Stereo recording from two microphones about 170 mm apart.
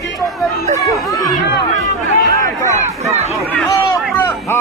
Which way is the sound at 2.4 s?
15° left (ahead or behind).